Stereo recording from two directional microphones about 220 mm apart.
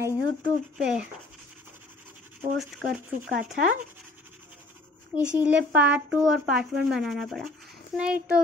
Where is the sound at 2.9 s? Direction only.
10° right (ahead or behind).